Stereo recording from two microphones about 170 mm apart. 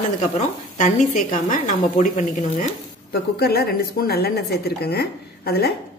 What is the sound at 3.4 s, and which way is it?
A woman's voice, 65° left (ahead or behind).